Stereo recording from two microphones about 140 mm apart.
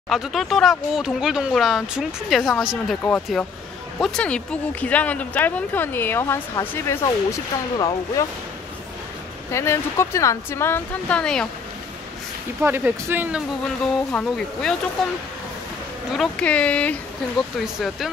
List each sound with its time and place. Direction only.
0.1 s speech: centre (ahead or behind)
4.0 s speech: 5° left (ahead or behind); by 8.3 s 25° left (ahead or behind)
9.5 s speech: 20° left (ahead or behind)
12.6 s speech: 15° right (ahead or behind)
14.1 s speech: 5° left (ahead or behind)
16.1 s speech: 5° left (ahead or behind)
17.6 s speech: centre (ahead or behind)